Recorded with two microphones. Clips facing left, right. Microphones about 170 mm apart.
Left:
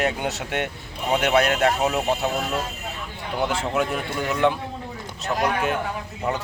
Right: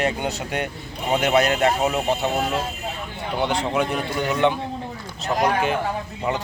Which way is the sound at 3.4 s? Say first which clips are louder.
Right 1 dB; centre (ahead or behind).